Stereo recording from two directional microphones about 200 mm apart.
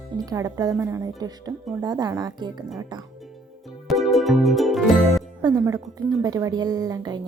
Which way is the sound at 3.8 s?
Centre (ahead or behind).